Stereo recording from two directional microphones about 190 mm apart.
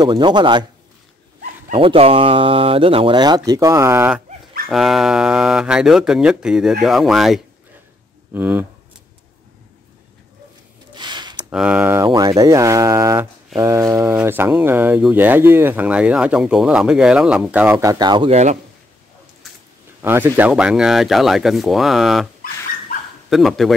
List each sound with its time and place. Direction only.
0.0 s speech: 25° right (ahead or behind)
1.7 s speech: 30° right (ahead or behind); by 8.6 s 10° right (ahead or behind)
11.0 s a sound: 25° right (ahead or behind)
11.3 s speech: 5° right (ahead or behind)
12.0 s speech: 20° right (ahead or behind)
20.0 s speech: 10° right (ahead or behind)
23.3 s speech: centre (ahead or behind)